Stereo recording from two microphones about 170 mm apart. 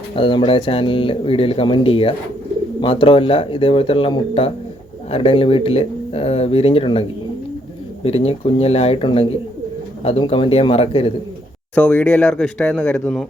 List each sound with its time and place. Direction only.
0.2 s speech: 30° left (ahead or behind)
8.0 s speech: 35° left (ahead or behind)
11.7 s speech: 10° left (ahead or behind)